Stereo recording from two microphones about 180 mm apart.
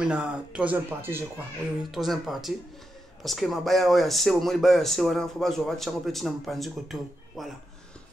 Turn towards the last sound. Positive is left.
turn(degrees=0)  # may be behind; listen again after turning